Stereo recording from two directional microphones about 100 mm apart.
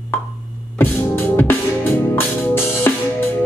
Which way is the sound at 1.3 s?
20° left (ahead or behind).